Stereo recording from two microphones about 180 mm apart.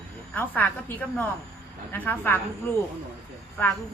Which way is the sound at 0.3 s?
10° left (ahead or behind).